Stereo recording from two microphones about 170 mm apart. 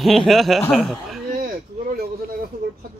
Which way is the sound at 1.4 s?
60° right (ahead or behind).